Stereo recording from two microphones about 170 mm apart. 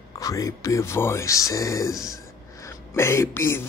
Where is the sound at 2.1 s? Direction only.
20° left (ahead or behind).